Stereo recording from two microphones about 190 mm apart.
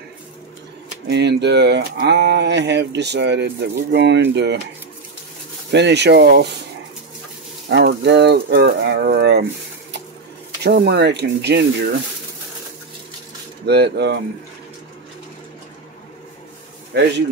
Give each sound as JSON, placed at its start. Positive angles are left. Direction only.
{"t": 1.1, "sound": "speech", "side_deg": -65}
{"t": 5.7, "sound": "speech", "side_deg": -65}
{"t": 7.7, "sound": "speech", "side_deg": -60}
{"t": 10.6, "sound": "speech", "side_deg": -60}
{"t": 13.7, "sound": "speech", "side_deg": -60}
{"t": 16.9, "sound": "speech", "side_deg": -65}